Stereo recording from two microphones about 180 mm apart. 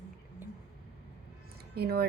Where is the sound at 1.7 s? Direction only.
60° right (ahead or behind).